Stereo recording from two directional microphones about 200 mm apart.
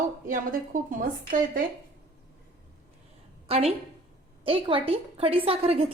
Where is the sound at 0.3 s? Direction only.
40° right (ahead or behind).